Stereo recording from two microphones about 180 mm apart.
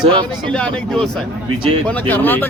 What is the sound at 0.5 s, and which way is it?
Speech, 5° left (ahead or behind).